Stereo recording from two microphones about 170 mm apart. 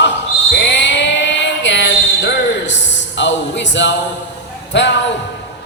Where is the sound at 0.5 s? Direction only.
90° left.